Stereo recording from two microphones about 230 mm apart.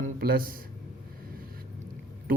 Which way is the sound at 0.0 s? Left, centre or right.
Right.